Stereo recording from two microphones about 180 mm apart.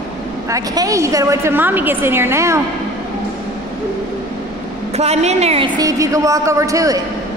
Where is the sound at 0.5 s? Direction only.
20° right (ahead or behind).